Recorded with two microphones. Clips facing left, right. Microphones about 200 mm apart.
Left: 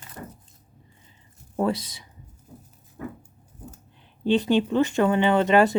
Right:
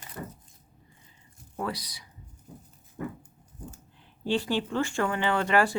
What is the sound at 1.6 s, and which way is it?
Speech, 25° left (ahead or behind).